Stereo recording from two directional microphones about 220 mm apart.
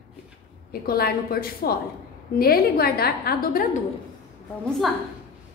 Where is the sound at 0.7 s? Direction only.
45° left (ahead or behind).